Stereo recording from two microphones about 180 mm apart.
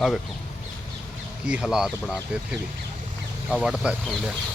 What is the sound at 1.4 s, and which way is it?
Speech, 5° right (ahead or behind).